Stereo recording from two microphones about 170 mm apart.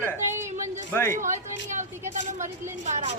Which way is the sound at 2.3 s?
45° right (ahead or behind).